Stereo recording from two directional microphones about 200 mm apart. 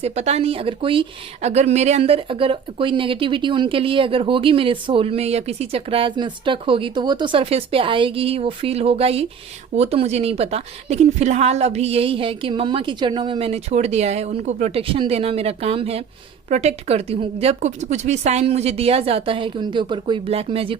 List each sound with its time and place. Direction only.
0.0 s a woman's voice: 30° right (ahead or behind)